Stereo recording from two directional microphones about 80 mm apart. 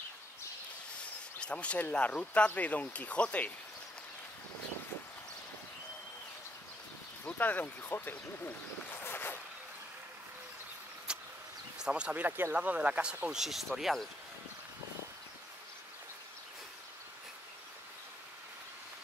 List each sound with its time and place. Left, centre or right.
1.4 s speech: centre
7.2 s speech: left
9.0 s a sound: left
11.1 s vehicle: centre
11.8 s speech: centre